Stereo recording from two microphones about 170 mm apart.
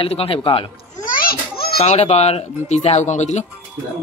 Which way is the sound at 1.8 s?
40° left (ahead or behind).